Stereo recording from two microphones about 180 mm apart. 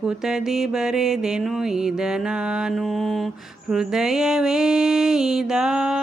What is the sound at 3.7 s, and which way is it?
Mantra, 5° right (ahead or behind).